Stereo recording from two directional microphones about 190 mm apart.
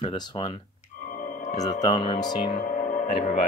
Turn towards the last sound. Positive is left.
turn(degrees=40)  # may be behind; listen again after turning